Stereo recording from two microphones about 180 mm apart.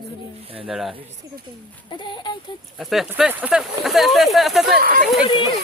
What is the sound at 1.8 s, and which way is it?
Speech, 25° left (ahead or behind).